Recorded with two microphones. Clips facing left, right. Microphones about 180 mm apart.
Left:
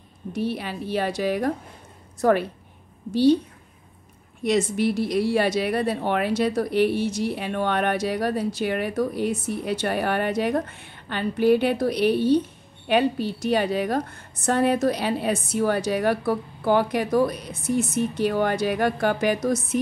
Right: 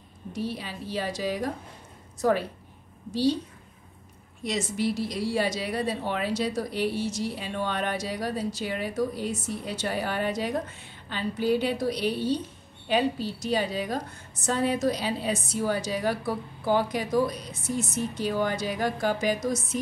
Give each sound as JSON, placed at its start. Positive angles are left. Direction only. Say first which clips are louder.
{"t": 0.3, "sound": "a woman's voice", "louder": "left 5 dB", "side_deg": 60}
{"t": 4.4, "sound": "speech", "louder": "left 7 dB", "side_deg": 55}